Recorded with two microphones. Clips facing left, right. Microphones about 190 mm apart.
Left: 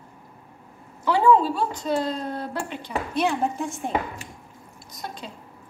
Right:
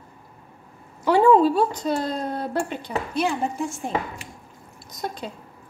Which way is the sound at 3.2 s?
Centre (ahead or behind).